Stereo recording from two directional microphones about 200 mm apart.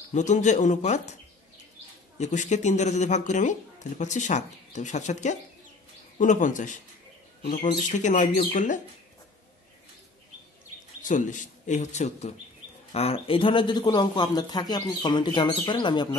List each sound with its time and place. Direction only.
0.1 s speech: 35° left (ahead or behind)
2.1 s speech: 35° left (ahead or behind)
7.9 s speech: 40° left (ahead or behind)
11.0 s speech: 40° left (ahead or behind); by 16.2 s 20° left (ahead or behind)